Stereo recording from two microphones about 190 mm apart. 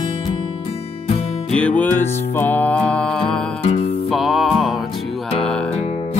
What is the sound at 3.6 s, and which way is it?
Music, 30° left (ahead or behind).